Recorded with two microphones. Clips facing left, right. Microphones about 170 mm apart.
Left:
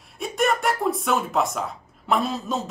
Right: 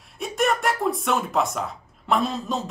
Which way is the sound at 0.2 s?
Centre (ahead or behind).